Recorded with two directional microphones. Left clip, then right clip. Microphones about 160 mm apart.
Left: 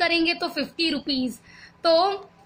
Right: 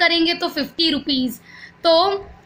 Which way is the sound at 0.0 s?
50° left (ahead or behind).